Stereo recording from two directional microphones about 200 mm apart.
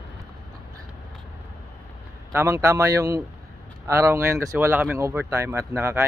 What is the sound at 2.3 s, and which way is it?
Speech, 15° right (ahead or behind).